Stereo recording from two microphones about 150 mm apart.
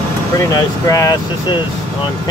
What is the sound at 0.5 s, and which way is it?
Speech, 20° left (ahead or behind).